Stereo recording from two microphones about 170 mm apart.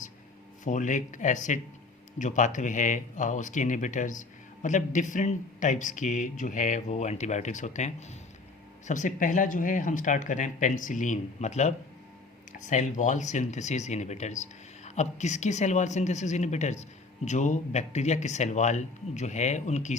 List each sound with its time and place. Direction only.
0.6 s speech: 45° left (ahead or behind)